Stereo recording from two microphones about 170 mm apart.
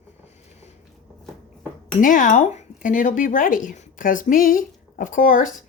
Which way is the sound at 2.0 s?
50° left (ahead or behind).